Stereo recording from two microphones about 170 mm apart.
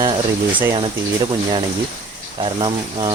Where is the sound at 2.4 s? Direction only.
30° right (ahead or behind).